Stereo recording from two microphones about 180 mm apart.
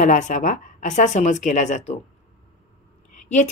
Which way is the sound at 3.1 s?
45° left (ahead or behind).